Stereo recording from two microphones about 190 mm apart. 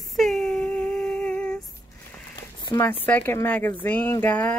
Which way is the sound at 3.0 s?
10° left (ahead or behind).